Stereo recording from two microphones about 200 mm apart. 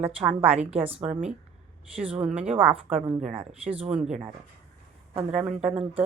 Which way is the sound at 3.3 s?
30° right (ahead or behind).